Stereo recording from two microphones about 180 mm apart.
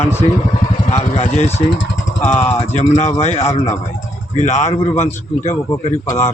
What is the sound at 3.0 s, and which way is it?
A man's voice, 35° left (ahead or behind).